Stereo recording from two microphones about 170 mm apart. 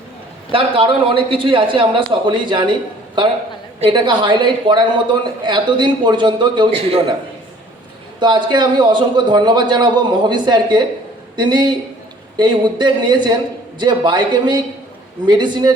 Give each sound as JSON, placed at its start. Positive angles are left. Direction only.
{"t": 0.5, "sound": "a man's voice", "side_deg": -30}
{"t": 3.8, "sound": "a man's voice", "side_deg": -25}
{"t": 8.2, "sound": "a man's voice", "side_deg": -25}